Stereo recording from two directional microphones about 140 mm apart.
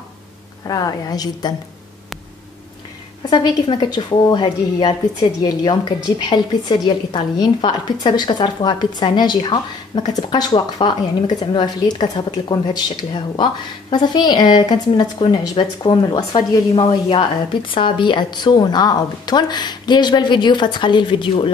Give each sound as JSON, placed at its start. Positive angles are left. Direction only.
{"t": 0.7, "sound": "a woman's voice", "side_deg": 25}
{"t": 3.3, "sound": "a woman's voice", "side_deg": 35}